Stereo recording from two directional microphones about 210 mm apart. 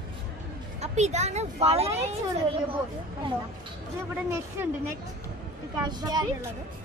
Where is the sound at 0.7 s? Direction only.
30° right (ahead or behind).